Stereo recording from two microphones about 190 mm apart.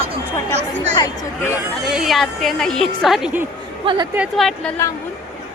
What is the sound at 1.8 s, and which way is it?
A woman's voice, centre (ahead or behind).